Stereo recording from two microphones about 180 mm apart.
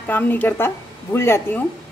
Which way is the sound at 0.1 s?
10° left (ahead or behind).